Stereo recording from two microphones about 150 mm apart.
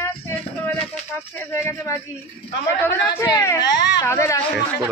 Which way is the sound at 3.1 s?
20° left (ahead or behind).